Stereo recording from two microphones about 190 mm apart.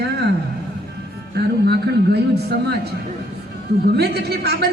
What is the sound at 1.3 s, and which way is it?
Speech, 60° right (ahead or behind).